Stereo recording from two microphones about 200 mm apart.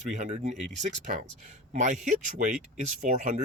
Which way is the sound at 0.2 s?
35° right (ahead or behind).